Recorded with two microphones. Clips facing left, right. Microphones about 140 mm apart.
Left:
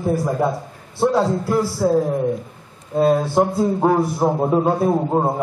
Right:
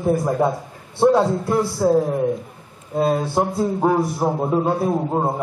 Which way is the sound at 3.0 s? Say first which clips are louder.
Left 3 dB; centre (ahead or behind).